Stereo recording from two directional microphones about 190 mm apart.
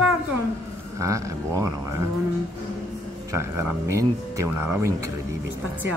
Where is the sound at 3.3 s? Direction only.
15° right (ahead or behind).